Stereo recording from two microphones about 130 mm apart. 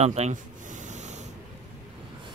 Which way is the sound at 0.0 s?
55° right (ahead or behind).